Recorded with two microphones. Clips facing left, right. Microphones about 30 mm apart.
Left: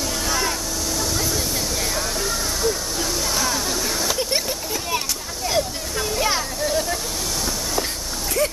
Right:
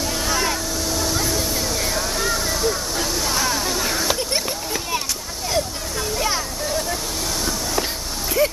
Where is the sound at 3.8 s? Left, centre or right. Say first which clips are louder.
Right 2 dB; centre.